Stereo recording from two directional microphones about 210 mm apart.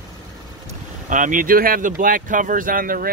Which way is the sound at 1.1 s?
40° right (ahead or behind).